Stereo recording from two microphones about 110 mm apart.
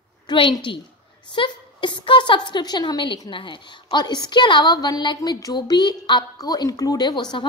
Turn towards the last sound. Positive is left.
turn(degrees=45)  # may be behind; listen again after turning